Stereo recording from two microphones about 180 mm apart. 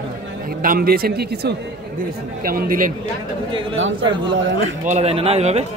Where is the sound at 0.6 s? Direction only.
55° right (ahead or behind).